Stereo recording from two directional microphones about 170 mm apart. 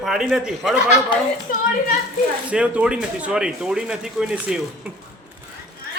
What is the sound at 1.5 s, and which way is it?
Speech, 55° left (ahead or behind).